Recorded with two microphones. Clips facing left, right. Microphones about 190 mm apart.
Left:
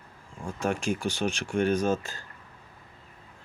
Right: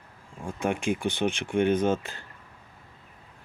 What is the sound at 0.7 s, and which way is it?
Speech, 15° right (ahead or behind).